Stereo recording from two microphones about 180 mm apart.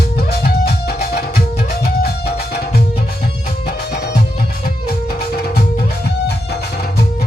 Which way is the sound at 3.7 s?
65° left (ahead or behind).